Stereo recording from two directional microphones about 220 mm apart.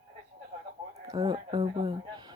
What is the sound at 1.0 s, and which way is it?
Speech, 20° right (ahead or behind).